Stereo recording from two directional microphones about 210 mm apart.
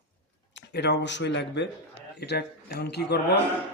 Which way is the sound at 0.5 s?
55° left (ahead or behind).